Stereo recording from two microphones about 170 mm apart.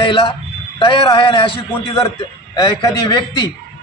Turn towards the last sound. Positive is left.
turn(degrees=20)  # may be behind; listen again after turning